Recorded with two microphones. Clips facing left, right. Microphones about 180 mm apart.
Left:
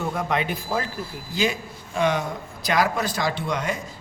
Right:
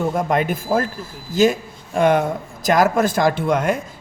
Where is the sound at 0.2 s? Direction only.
45° right (ahead or behind).